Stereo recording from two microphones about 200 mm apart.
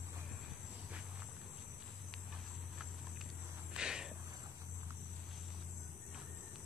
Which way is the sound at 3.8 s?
5° right (ahead or behind).